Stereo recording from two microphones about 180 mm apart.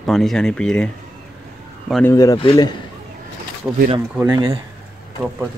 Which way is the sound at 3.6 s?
5° right (ahead or behind).